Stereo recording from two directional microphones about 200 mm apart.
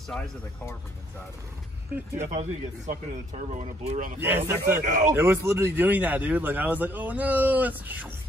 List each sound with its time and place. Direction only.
0.1 s speech: 5° left (ahead or behind)
2.1 s speech: 30° right (ahead or behind)
4.2 s a man's voice: 10° right (ahead or behind)
4.8 s speech: 40° right (ahead or behind)
5.1 s a man's voice: 10° right (ahead or behind)